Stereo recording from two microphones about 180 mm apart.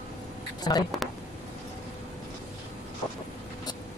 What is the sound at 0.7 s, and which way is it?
Speech, 25° left (ahead or behind).